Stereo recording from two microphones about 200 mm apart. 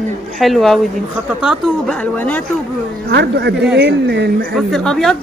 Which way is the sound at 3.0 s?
55° right (ahead or behind).